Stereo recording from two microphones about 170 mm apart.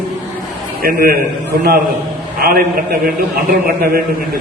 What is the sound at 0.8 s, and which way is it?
Speech, 60° right (ahead or behind).